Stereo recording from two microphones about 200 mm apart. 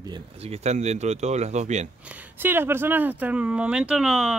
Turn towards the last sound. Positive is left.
turn(degrees=-5)  # may be behind; listen again after turning